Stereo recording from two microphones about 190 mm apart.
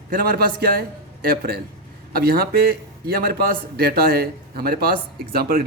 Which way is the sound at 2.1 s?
50° right (ahead or behind).